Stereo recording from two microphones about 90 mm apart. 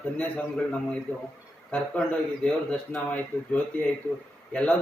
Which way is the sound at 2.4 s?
15° left (ahead or behind).